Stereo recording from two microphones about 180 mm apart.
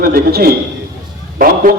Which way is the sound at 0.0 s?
60° right (ahead or behind).